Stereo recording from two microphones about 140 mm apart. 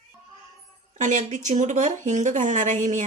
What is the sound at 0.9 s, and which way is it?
Speech, 65° right (ahead or behind).